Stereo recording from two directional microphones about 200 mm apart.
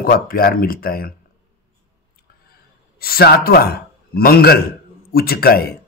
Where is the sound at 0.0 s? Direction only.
45° left (ahead or behind).